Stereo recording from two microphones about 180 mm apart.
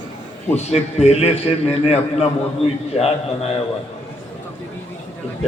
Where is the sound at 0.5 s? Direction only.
35° left (ahead or behind).